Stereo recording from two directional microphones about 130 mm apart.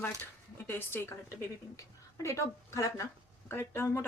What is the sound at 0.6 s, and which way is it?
A woman's voice, 15° left (ahead or behind).